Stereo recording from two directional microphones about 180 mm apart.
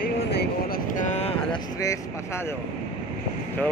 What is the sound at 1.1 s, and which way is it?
Speech, 35° left (ahead or behind).